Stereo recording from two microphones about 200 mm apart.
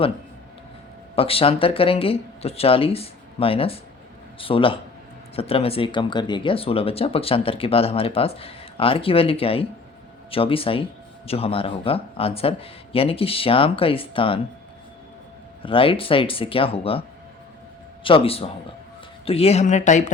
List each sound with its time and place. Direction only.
1.1 s speech: 30° left (ahead or behind)
15.6 s speech: 25° left (ahead or behind)
18.0 s speech: 25° left (ahead or behind)